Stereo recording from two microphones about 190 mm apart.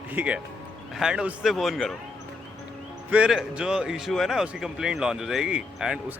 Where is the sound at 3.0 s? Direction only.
5° right (ahead or behind).